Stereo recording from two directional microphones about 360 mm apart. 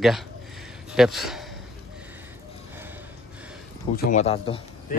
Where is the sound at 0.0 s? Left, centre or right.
Centre.